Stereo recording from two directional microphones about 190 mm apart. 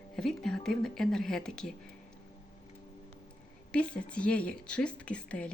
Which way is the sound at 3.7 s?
5° left (ahead or behind).